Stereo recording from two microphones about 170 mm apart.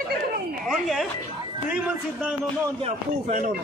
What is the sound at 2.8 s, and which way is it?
Speech, 40° right (ahead or behind).